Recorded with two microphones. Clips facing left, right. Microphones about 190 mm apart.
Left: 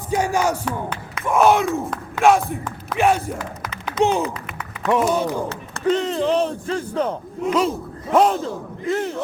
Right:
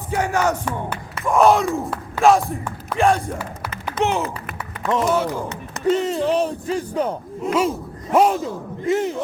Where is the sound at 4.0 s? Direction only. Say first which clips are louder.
Left 3 dB; 50° right (ahead or behind).